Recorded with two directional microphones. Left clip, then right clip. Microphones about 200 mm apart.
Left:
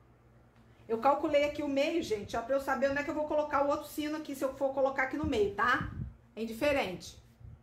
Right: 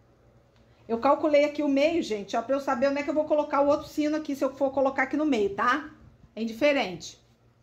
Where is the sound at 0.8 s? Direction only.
35° right (ahead or behind).